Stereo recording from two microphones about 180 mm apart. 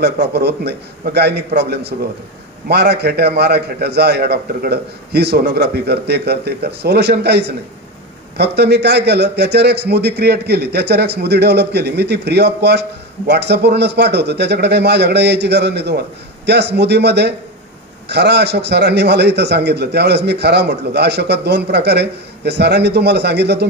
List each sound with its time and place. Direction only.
0.0 s a man's voice: 65° right (ahead or behind)